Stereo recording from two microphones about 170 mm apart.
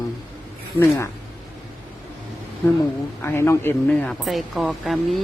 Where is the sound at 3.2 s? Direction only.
15° left (ahead or behind).